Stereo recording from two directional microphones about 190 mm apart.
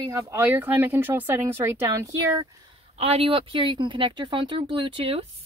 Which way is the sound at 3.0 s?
30° right (ahead or behind).